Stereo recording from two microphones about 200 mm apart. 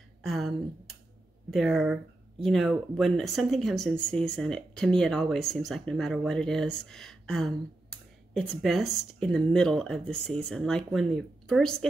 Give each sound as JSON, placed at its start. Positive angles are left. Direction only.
{"t": 0.2, "sound": "speech", "side_deg": 0}